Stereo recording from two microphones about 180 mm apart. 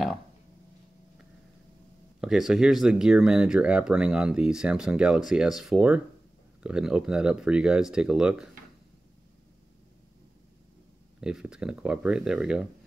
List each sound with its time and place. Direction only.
2.1 s speech: 5° right (ahead or behind)
11.1 s speech: 5° right (ahead or behind)